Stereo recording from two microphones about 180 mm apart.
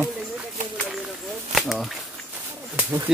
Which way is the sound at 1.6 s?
Centre (ahead or behind).